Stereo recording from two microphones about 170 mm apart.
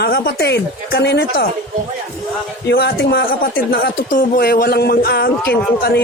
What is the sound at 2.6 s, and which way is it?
A man's voice, 70° left (ahead or behind).